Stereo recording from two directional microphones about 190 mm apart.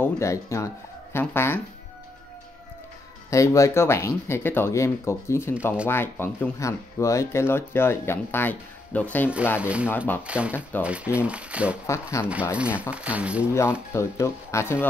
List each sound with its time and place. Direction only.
0.0 s speech: 15° left (ahead or behind)
3.3 s speech: 15° left (ahead or behind)
9.6 s speech: 5° right (ahead or behind)
9.8 s speech: 10° left (ahead or behind)
10.2 s speech: 5° right (ahead or behind)
11.8 s speech: 15° left (ahead or behind)
12.5 s speech: 5° right (ahead or behind)
13.9 s speech: 15° left (ahead or behind)